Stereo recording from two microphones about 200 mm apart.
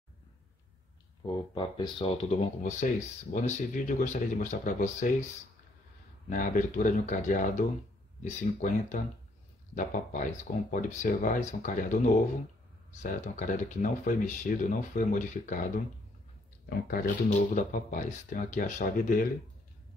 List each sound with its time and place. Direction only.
1.2 s speech: 25° left (ahead or behind); by 5.1 s 40° left (ahead or behind)
6.2 s speech: 40° left (ahead or behind)
13.0 s speech: 40° left (ahead or behind)